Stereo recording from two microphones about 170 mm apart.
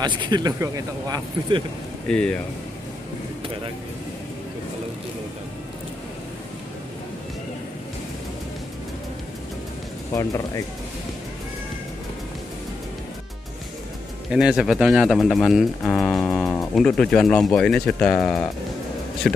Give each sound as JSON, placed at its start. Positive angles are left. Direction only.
{"t": 0.0, "sound": "speech", "side_deg": -25}
{"t": 2.0, "sound": "speech", "side_deg": 5}
{"t": 10.1, "sound": "speech", "side_deg": 20}
{"t": 14.3, "sound": "speech", "side_deg": -5}